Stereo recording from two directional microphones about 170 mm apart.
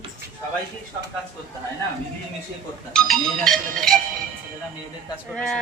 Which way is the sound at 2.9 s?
5° left (ahead or behind).